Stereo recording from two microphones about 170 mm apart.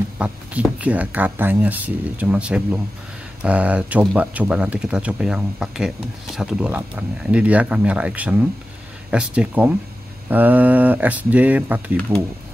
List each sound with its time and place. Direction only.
0.2 s speech: 10° right (ahead or behind)